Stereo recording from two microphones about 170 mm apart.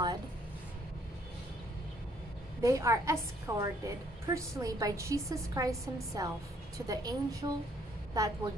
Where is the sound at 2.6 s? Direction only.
20° right (ahead or behind).